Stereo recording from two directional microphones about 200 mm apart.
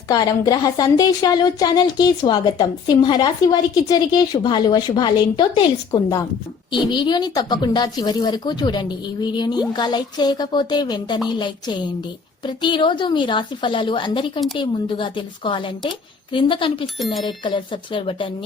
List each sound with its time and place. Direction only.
0.1 s a woman's voice: 20° left (ahead or behind)